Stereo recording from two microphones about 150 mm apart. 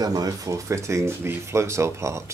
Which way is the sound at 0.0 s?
25° right (ahead or behind).